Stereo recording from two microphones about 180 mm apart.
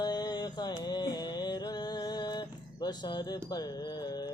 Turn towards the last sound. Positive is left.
turn(degrees=20)  # may be behind; listen again after turning